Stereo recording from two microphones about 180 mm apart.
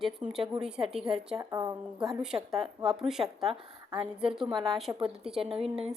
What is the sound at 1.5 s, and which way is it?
Speech, 20° right (ahead or behind).